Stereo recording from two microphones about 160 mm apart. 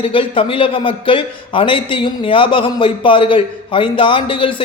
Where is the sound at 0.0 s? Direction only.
35° left (ahead or behind).